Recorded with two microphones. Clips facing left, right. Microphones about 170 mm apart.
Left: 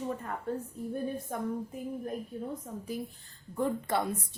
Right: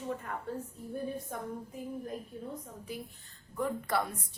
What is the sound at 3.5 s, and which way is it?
Speech, 25° left (ahead or behind).